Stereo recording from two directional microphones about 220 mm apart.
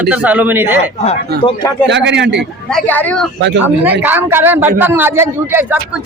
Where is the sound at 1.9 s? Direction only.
55° right (ahead or behind).